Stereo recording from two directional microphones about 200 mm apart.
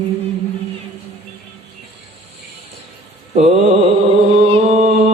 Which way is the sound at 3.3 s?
35° right (ahead or behind).